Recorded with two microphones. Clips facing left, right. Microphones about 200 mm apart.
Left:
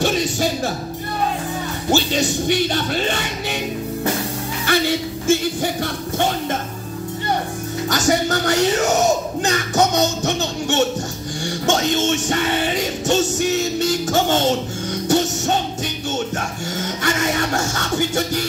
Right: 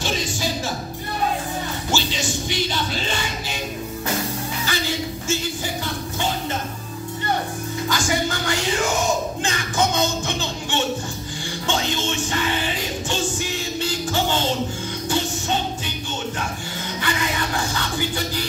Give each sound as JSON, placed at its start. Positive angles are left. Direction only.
{"t": 0.0, "sound": "music", "side_deg": 60}
{"t": 1.9, "sound": "music", "side_deg": 60}
{"t": 4.6, "sound": "speech", "side_deg": 60}
{"t": 7.9, "sound": "music", "side_deg": 40}
{"t": 17.0, "sound": "music", "side_deg": 45}